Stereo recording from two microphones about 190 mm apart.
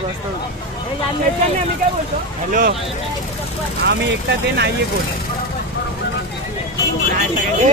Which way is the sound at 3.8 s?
65° right (ahead or behind).